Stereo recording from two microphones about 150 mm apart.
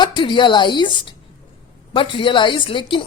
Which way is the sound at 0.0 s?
30° left (ahead or behind).